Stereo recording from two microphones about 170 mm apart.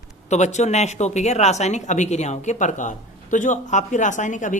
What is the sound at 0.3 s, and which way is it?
Speech, 45° left (ahead or behind).